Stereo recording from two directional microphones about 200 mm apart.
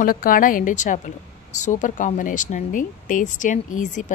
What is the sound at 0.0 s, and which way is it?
A woman's voice, 45° left (ahead or behind).